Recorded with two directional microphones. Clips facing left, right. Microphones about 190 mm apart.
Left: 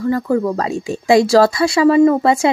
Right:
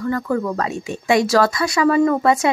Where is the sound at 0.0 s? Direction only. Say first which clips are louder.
Left 4 dB; 25° left (ahead or behind).